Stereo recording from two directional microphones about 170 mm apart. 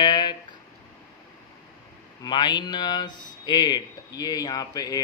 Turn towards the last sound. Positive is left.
turn(degrees=20)  # may be behind; listen again after turning